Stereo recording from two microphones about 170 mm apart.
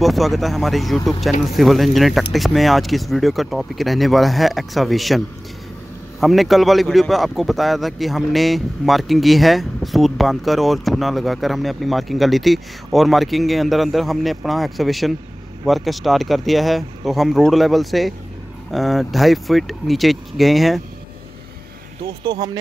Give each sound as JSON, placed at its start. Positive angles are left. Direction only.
{"t": 0.0, "sound": "speech", "side_deg": 0}
{"t": 22.0, "sound": "speech", "side_deg": -25}